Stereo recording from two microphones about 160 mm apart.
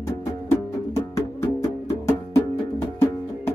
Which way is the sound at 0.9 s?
20° left (ahead or behind).